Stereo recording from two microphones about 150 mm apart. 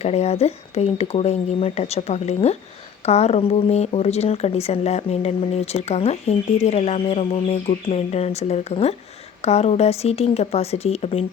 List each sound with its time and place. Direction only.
0.0 s speech: 45° left (ahead or behind)